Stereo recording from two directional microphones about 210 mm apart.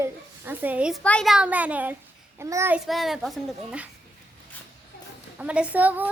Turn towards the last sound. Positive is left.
turn(degrees=-10)  # may be behind; listen again after turning